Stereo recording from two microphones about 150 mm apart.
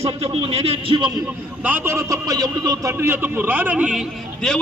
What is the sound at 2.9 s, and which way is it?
A man's voice, 15° right (ahead or behind).